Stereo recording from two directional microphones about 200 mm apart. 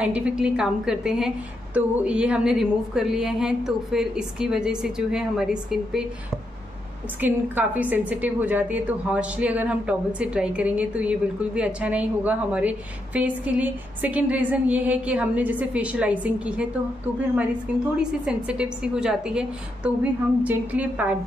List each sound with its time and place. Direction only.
0.0 s a woman's voice: 5° right (ahead or behind)
7.2 s a woman's voice: 10° right (ahead or behind)
18.2 s a woman's voice: 5° right (ahead or behind)